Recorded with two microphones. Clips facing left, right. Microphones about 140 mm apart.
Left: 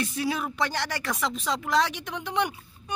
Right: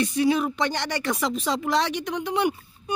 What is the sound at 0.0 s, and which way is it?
Speech, 5° left (ahead or behind).